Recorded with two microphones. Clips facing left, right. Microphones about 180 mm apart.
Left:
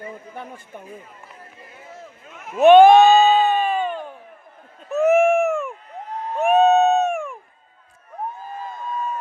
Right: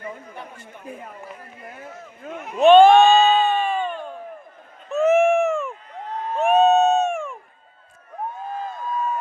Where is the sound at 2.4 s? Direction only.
Centre (ahead or behind).